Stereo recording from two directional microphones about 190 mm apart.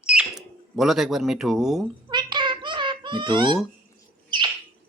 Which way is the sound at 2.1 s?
25° right (ahead or behind).